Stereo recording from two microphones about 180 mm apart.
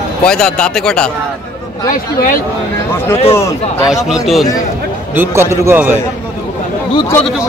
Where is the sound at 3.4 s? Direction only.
15° left (ahead or behind).